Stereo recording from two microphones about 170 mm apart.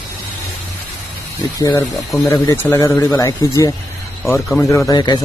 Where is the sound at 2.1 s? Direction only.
10° left (ahead or behind).